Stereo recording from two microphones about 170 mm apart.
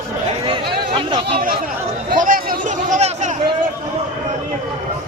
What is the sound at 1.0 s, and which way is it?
Chatter, 30° right (ahead or behind).